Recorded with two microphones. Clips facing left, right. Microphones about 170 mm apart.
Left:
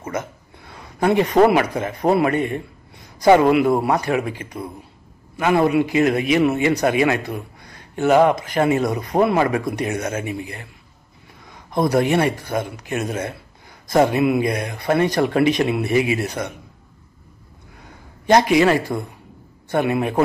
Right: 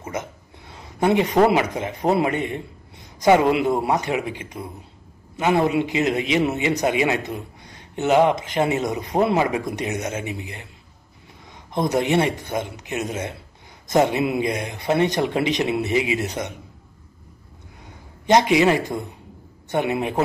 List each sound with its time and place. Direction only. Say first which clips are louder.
0.7 s a man's voice: left 1 dB; 20° right (ahead or behind)
11.8 s speech: left 2 dB; 20° right (ahead or behind)
18.2 s a man's voice: left 2 dB; 20° right (ahead or behind)